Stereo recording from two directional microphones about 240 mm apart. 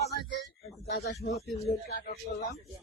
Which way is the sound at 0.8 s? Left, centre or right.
Left.